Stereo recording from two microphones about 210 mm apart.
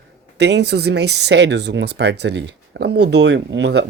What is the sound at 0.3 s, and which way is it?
Speech, 55° right (ahead or behind).